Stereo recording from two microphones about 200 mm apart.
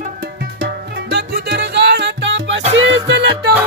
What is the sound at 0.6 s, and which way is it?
Music, 55° right (ahead or behind).